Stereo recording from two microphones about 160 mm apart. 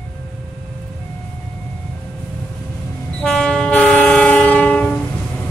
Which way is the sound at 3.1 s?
5° left (ahead or behind).